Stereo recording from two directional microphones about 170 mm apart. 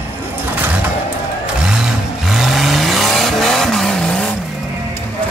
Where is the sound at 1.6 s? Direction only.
5° right (ahead or behind).